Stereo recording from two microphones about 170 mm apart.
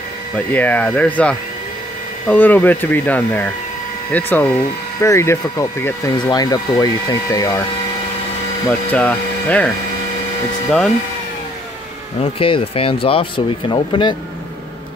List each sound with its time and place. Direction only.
0.5 s speech: 10° left (ahead or behind)
8.6 s speech: 10° left (ahead or behind)
12.4 s speech: 30° left (ahead or behind)